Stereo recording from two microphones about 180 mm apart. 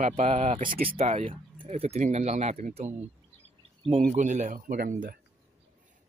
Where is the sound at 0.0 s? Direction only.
35° right (ahead or behind); by 5.2 s 55° right (ahead or behind).